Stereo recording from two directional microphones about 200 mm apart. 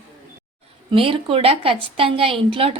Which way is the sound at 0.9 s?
25° right (ahead or behind).